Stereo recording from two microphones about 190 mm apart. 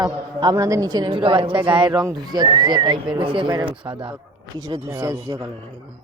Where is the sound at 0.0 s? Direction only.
20° right (ahead or behind).